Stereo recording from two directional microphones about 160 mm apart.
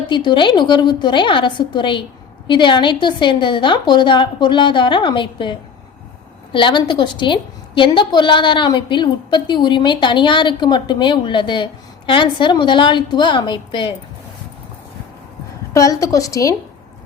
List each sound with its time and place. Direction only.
0.1 s a woman's voice: 30° left (ahead or behind)
15.7 s a woman's voice: 20° left (ahead or behind)